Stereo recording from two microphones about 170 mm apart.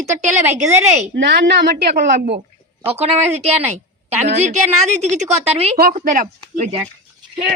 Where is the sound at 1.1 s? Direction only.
85° right.